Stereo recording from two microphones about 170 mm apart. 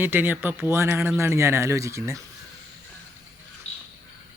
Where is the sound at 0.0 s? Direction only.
10° right (ahead or behind).